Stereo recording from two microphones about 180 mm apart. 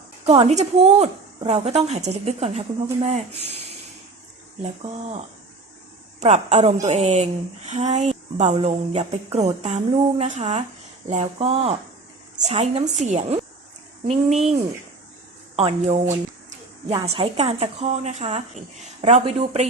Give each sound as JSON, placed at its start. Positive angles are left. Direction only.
{"t": 0.3, "sound": "a woman's voice", "side_deg": -35}
{"t": 4.6, "sound": "a woman's voice", "side_deg": -35}
{"t": 17.0, "sound": "a woman's voice", "side_deg": -30}